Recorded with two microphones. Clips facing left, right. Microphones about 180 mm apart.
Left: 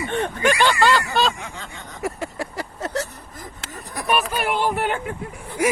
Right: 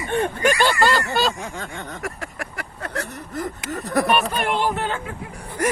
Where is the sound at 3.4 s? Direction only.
70° right (ahead or behind).